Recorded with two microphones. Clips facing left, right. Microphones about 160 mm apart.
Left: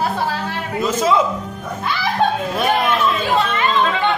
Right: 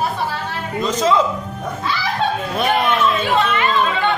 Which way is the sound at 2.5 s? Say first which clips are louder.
Even; centre (ahead or behind).